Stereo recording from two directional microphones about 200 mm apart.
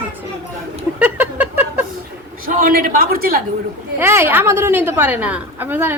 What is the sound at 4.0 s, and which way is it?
A woman's voice, 10° right (ahead or behind).